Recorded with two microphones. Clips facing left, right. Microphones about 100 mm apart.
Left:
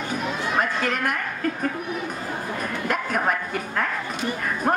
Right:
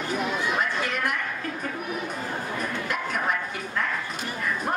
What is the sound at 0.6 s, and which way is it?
Chatter, 45° left (ahead or behind).